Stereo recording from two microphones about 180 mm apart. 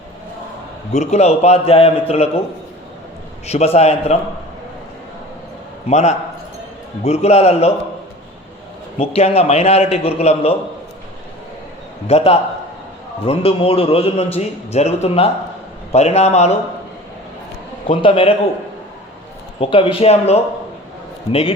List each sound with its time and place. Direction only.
0.9 s a man's voice: 35° left (ahead or behind)
3.4 s a man's voice: 35° left (ahead or behind)
5.9 s a man's voice: 40° left (ahead or behind)
9.0 s a man's voice: 35° left (ahead or behind)
12.0 s a man's voice: 35° left (ahead or behind)
17.8 s a man's voice: 30° left (ahead or behind)
19.5 s a man's voice: 30° left (ahead or behind)